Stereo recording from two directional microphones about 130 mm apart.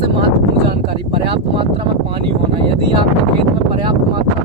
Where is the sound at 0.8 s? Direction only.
40° right (ahead or behind).